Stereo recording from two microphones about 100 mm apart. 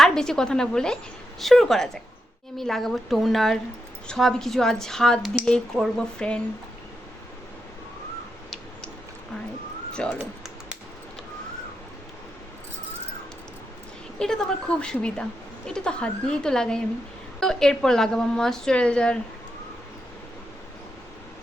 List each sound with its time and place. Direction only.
0.0 s a woman's voice: 5° left (ahead or behind)
9.9 s speech: 10° left (ahead or behind)
14.2 s a woman's voice: 10° left (ahead or behind)